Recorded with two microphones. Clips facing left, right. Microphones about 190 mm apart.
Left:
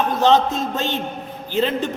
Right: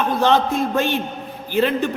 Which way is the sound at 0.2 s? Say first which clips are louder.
Left 2 dB; 20° left (ahead or behind).